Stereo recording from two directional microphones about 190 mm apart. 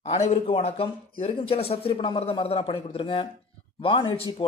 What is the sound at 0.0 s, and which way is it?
Speech, 35° left (ahead or behind).